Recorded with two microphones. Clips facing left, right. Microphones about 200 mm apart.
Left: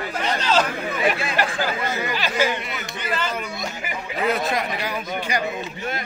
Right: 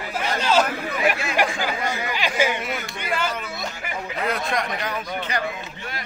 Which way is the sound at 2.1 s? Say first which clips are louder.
Right 1 dB; 15° right (ahead or behind).